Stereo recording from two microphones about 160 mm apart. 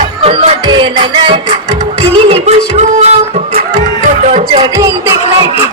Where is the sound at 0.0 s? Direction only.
35° right (ahead or behind).